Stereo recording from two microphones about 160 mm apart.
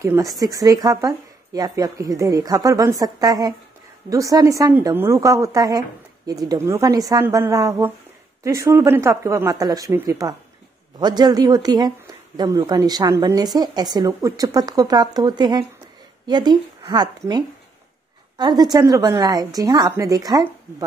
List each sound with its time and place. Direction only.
0.0 s a woman's voice: 20° right (ahead or behind)
18.4 s a woman's voice: 25° right (ahead or behind)